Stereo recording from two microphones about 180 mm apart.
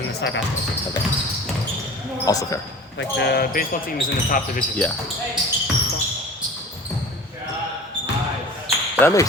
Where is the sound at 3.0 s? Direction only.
70° left (ahead or behind); by 4.6 s 50° left (ahead or behind).